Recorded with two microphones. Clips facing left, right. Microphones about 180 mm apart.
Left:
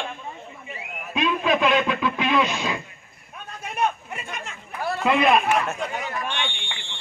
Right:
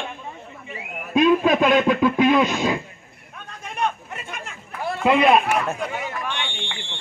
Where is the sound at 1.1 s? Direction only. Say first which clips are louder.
Right 6 dB; 45° right (ahead or behind).